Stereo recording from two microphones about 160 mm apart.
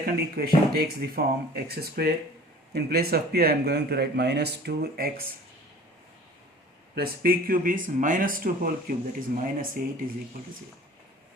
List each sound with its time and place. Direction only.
0.0 s speech: 75° right (ahead or behind)
6.9 s speech: 65° right (ahead or behind)